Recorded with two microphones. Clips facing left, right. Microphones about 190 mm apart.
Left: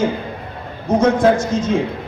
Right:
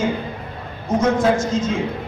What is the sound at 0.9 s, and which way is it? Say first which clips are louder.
Speech: left 3 dB; 65° left (ahead or behind).